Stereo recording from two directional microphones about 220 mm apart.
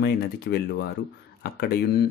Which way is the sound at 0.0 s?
50° left (ahead or behind).